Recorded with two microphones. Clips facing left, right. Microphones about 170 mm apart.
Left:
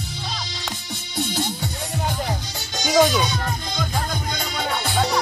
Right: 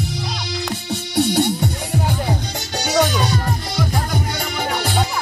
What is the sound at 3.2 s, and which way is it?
Music, 65° right (ahead or behind).